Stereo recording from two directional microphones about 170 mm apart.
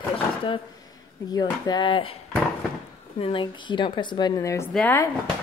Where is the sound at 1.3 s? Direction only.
25° left (ahead or behind).